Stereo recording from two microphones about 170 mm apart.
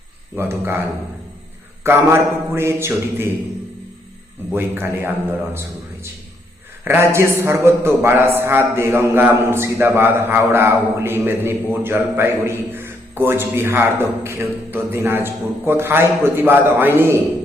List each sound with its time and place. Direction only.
0.3 s a man's voice: 15° right (ahead or behind)
1.8 s a man's voice: 15° right (ahead or behind)
4.5 s a man's voice: 10° right (ahead or behind)